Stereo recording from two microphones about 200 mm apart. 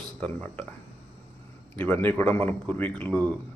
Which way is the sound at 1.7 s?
10° left (ahead or behind).